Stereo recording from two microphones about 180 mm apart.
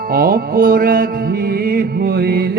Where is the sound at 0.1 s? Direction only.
55° right (ahead or behind).